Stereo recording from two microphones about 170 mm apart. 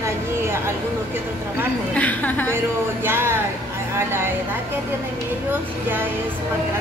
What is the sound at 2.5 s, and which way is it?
Speech, 15° right (ahead or behind).